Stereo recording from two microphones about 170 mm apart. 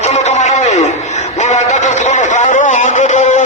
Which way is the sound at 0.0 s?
40° left (ahead or behind).